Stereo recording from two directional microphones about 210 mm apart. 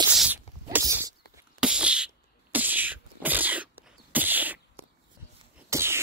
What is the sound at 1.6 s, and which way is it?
Beatboxing, 5° right (ahead or behind).